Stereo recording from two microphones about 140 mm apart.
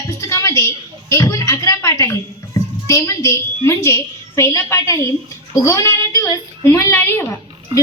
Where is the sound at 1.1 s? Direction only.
25° left (ahead or behind).